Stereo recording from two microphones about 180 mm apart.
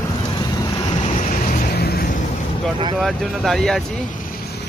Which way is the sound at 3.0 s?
Centre (ahead or behind).